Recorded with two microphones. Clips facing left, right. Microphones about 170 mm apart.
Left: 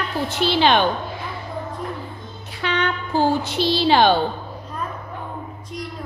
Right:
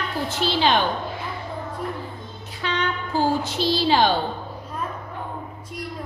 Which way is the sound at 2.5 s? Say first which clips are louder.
Left 3 dB; 70° left (ahead or behind).